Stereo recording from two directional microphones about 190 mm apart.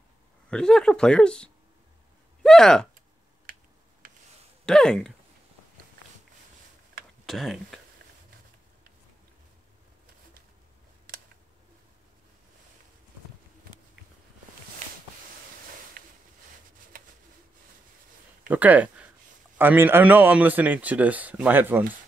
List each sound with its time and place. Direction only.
0.5 s speech: 5° left (ahead or behind)
4.0 s a sound: 50° right (ahead or behind)
4.6 s speech: 5° left (ahead or behind)
7.2 s speech: centre (ahead or behind)
16.0 s a sound: 50° right (ahead or behind)
18.5 s a man's voice: 10° right (ahead or behind)